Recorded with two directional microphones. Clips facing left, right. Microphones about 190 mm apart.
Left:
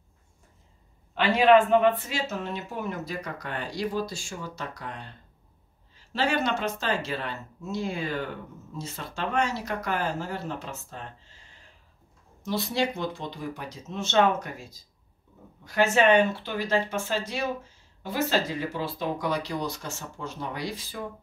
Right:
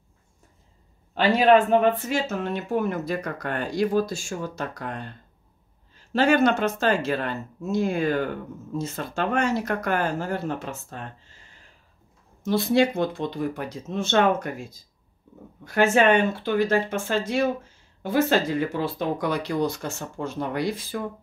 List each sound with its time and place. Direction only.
1.1 s speech: 40° right (ahead or behind)
6.1 s speech: 50° right (ahead or behind)
12.4 s speech: 55° right (ahead or behind)